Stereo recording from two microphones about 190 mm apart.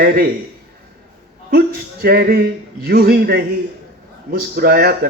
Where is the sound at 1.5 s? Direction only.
50° right (ahead or behind).